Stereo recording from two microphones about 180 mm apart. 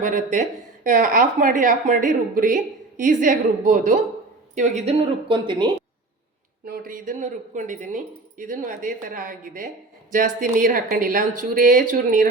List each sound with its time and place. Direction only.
0.0 s a woman's voice: 45° right (ahead or behind)
5.3 s a woman's voice: 25° right (ahead or behind)
6.7 s a woman's voice: 50° right (ahead or behind)